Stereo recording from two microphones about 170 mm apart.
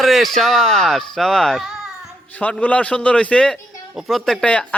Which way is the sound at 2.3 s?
10° left (ahead or behind).